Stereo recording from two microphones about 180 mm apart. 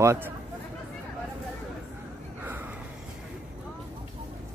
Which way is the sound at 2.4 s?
10° right (ahead or behind).